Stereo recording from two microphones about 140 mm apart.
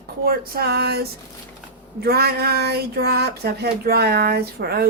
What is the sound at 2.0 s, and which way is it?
Speech, 90° right.